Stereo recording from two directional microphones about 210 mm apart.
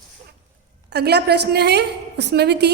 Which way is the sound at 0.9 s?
50° right (ahead or behind).